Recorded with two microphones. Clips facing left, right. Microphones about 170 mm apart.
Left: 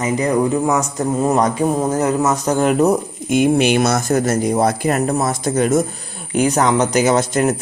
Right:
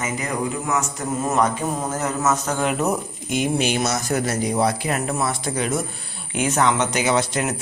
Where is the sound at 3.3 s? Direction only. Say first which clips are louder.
Left 8 dB; 60° left (ahead or behind).